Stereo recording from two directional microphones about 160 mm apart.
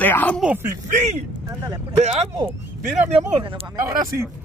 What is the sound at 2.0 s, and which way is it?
Speech, 40° right (ahead or behind).